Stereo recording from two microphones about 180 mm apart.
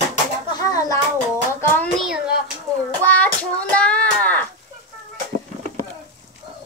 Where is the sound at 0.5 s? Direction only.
20° left (ahead or behind).